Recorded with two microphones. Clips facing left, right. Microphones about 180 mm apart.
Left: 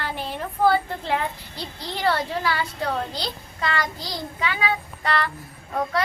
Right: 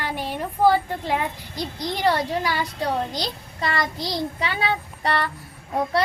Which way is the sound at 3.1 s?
35° right (ahead or behind).